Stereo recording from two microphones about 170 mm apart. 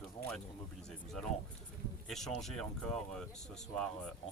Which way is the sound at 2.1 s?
Centre (ahead or behind).